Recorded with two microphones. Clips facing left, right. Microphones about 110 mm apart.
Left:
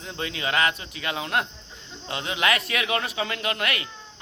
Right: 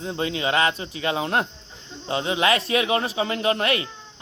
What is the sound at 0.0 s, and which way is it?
Speech, 25° right (ahead or behind).